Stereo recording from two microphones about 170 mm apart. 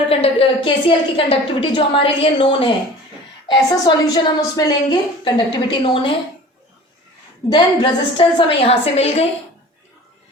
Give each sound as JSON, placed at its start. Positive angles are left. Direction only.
{"t": 0.1, "sound": "a woman's voice", "side_deg": 35}
{"t": 7.5, "sound": "a woman's voice", "side_deg": 25}